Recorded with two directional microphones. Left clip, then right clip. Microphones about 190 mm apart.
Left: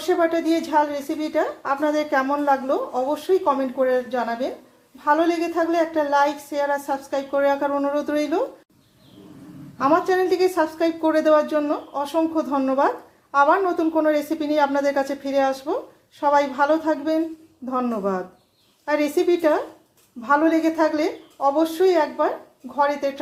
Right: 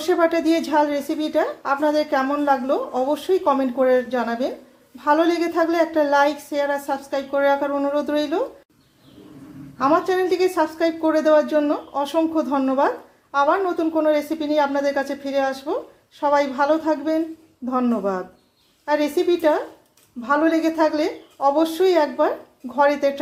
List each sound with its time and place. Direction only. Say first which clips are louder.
0.0 s a woman's voice: right 2 dB; 20° right (ahead or behind); by 8.4 s centre (ahead or behind)
9.7 s a woman's voice: even; 5° right (ahead or behind)